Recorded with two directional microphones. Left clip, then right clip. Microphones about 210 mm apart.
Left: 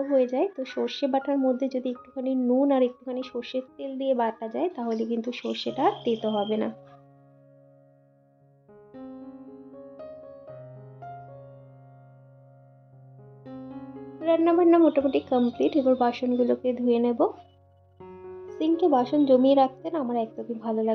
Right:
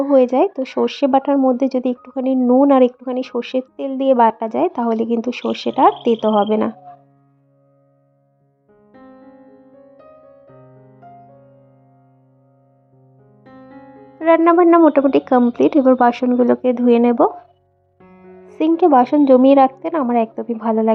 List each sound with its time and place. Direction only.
0.0 s speech: 35° right (ahead or behind)
9.7 s music: centre (ahead or behind)
13.4 s music: centre (ahead or behind)
14.3 s speech: 35° right (ahead or behind)
18.6 s speech: 35° right (ahead or behind)